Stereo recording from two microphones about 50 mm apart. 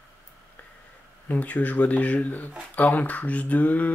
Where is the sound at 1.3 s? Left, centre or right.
Left.